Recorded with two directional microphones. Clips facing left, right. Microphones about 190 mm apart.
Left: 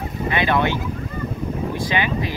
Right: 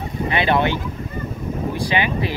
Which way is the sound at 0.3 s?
20° right (ahead or behind).